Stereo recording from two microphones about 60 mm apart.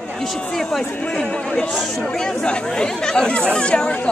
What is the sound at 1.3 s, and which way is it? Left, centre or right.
Speech, centre.